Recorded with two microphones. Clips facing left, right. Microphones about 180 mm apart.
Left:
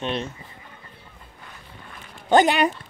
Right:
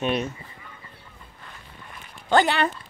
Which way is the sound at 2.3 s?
15° left (ahead or behind).